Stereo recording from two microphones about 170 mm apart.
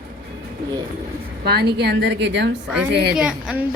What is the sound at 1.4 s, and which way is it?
A woman's voice, 70° right (ahead or behind).